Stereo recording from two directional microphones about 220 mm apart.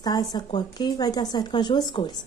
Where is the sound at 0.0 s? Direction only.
15° left (ahead or behind).